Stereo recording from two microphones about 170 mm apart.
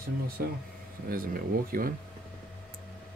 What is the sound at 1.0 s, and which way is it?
Speech, 60° right (ahead or behind).